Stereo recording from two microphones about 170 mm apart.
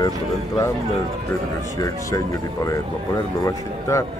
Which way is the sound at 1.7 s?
20° left (ahead or behind).